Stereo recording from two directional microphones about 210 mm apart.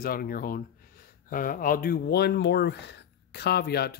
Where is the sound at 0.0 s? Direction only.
45° left (ahead or behind).